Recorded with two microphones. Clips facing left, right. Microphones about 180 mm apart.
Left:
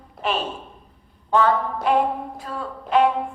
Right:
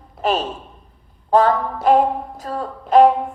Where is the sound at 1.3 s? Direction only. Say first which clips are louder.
Right 4 dB; 40° right (ahead or behind).